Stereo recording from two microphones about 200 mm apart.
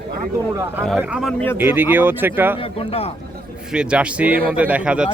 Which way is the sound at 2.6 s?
30° left (ahead or behind).